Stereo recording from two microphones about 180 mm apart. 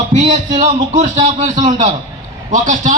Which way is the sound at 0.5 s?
40° right (ahead or behind).